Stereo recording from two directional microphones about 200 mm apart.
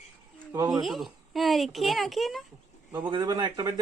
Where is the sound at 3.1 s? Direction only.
20° right (ahead or behind).